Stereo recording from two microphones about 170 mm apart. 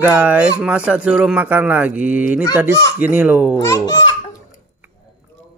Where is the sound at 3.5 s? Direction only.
15° left (ahead or behind).